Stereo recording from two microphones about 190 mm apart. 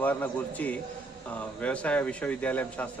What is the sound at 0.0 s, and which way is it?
Speech, 10° left (ahead or behind).